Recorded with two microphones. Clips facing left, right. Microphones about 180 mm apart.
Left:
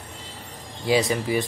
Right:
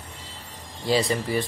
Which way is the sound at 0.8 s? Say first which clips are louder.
Left 2 dB; 5° left (ahead or behind).